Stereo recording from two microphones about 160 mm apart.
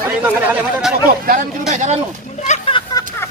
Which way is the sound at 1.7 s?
45° right (ahead or behind).